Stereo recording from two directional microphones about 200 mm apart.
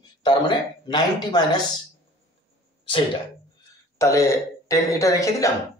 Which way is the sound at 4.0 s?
15° left (ahead or behind).